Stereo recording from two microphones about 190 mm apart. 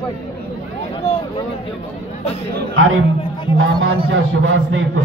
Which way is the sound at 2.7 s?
90° right.